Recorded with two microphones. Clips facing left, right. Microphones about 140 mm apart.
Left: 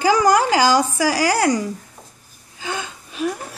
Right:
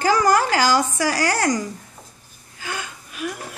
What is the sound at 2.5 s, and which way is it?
Gasp, 20° left (ahead or behind).